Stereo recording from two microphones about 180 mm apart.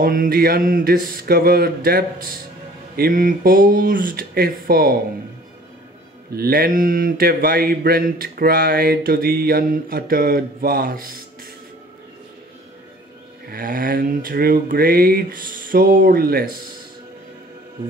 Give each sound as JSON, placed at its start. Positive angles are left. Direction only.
{"t": 0.0, "sound": "speech", "side_deg": -50}
{"t": 3.0, "sound": "mantra", "side_deg": -50}
{"t": 6.3, "sound": "speech", "side_deg": -55}
{"t": 13.5, "sound": "mantra", "side_deg": -50}